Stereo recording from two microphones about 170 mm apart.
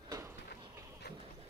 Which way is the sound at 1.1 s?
75° left (ahead or behind).